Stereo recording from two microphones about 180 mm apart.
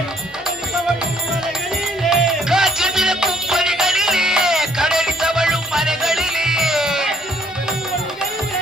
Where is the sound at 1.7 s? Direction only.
Centre (ahead or behind).